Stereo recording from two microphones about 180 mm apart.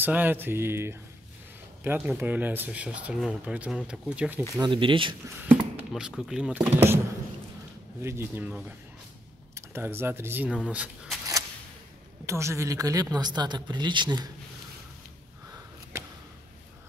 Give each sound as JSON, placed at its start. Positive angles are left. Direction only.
{"t": 0.0, "sound": "speech", "side_deg": -10}
{"t": 4.6, "sound": "speech", "side_deg": -25}
{"t": 5.9, "sound": "speech", "side_deg": -5}
{"t": 6.6, "sound": "speech", "side_deg": -15}
{"t": 8.0, "sound": "speech", "side_deg": -15}
{"t": 12.3, "sound": "speech", "side_deg": -15}